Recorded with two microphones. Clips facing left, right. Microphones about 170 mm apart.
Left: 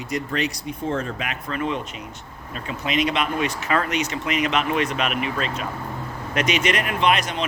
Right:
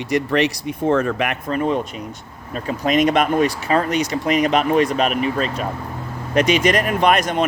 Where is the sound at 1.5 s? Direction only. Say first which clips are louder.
Right 4 dB; 40° right (ahead or behind).